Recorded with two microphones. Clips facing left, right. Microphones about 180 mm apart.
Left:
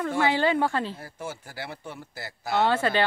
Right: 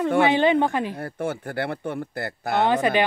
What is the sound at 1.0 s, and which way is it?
Speech, 60° right (ahead or behind).